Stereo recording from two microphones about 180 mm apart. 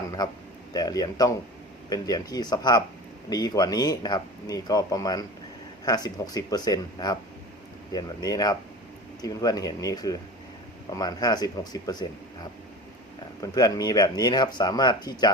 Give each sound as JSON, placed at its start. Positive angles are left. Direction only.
{"t": 0.7, "sound": "speech", "side_deg": 20}